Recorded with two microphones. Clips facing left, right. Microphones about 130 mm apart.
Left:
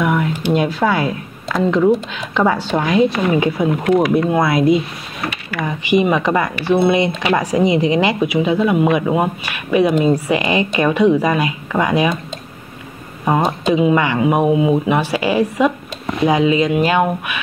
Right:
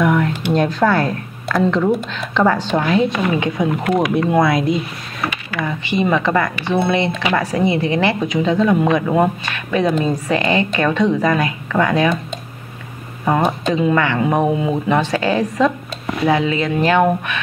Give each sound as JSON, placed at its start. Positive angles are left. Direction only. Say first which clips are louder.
{"t": 0.0, "sound": "speech", "louder": "right 1 dB", "side_deg": 10}
{"t": 4.3, "sound": "speech", "louder": "left 1 dB", "side_deg": 0}
{"t": 5.6, "sound": "speech", "louder": "left 4 dB", "side_deg": 15}
{"t": 13.2, "sound": "speech", "louder": "even", "side_deg": 10}